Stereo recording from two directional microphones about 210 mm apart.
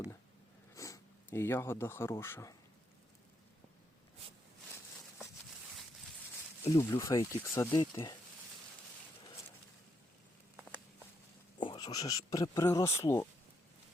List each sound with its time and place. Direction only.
0.7 s speech: 15° left (ahead or behind)
6.7 s speech: 15° left (ahead or behind)
11.6 s speech: 20° left (ahead or behind)